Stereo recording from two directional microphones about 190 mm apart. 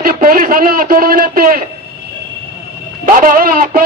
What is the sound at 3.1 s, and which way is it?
Speech, 45° right (ahead or behind).